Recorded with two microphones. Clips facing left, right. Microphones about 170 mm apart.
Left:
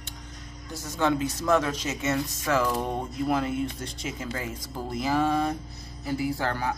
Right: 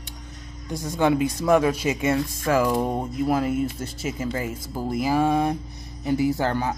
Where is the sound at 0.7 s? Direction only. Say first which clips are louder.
Right 5 dB; 15° right (ahead or behind).